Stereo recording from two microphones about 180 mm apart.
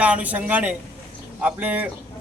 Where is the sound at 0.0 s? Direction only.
10° right (ahead or behind).